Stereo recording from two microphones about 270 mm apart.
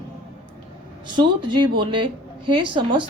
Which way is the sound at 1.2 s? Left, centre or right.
Centre.